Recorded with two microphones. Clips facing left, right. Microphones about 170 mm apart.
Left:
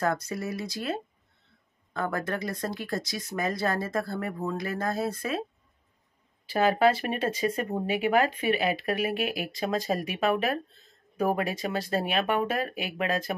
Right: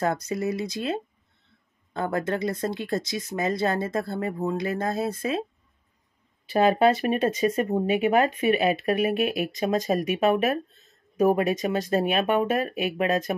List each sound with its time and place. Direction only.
0.0 s speech: 20° right (ahead or behind)
6.5 s speech: 25° right (ahead or behind)